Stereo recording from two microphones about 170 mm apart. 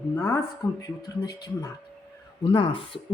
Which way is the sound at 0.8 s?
20° left (ahead or behind).